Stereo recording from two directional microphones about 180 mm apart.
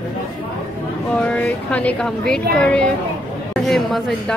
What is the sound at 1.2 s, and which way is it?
Speech, 10° left (ahead or behind).